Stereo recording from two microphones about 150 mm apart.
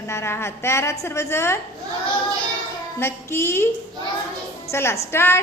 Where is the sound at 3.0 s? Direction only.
15° left (ahead or behind).